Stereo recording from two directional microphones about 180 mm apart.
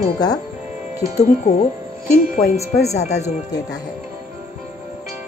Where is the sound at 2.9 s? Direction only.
40° left (ahead or behind).